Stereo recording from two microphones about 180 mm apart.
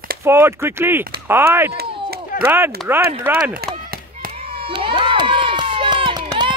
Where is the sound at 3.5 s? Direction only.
55° right (ahead or behind).